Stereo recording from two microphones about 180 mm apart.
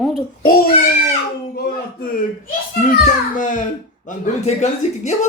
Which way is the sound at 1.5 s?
55° left (ahead or behind).